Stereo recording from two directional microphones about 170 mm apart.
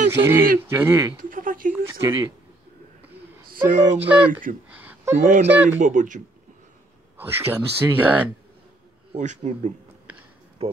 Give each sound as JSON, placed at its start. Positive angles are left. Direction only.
{"t": 0.1, "sound": "speech", "side_deg": -15}
{"t": 1.3, "sound": "a sound", "side_deg": -55}
{"t": 1.7, "sound": "speech", "side_deg": -15}
{"t": 3.5, "sound": "speech", "side_deg": -45}
{"t": 4.0, "sound": "speech", "side_deg": -10}
{"t": 4.6, "sound": "a sound", "side_deg": -10}
{"t": 5.2, "sound": "speech", "side_deg": -50}
{"t": 7.2, "sound": "speech", "side_deg": -15}
{"t": 9.1, "sound": "speech", "side_deg": -45}